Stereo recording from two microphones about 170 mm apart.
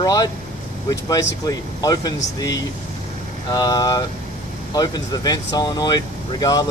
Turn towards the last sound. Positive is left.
turn(degrees=20)  # may be behind; listen again after turning